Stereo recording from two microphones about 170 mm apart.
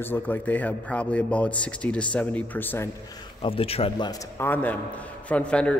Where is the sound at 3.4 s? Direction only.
35° left (ahead or behind).